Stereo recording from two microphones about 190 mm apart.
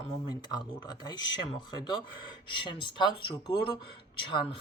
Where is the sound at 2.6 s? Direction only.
25° left (ahead or behind).